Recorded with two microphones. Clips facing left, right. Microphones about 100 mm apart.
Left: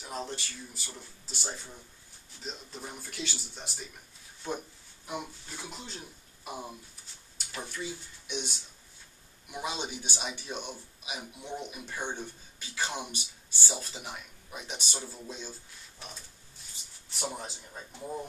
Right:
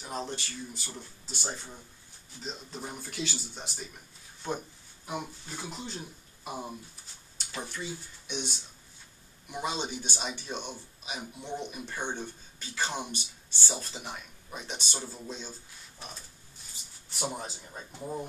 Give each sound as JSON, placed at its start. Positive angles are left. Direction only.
{"t": 0.0, "sound": "speech", "side_deg": 0}
{"t": 17.1, "sound": "speech", "side_deg": -5}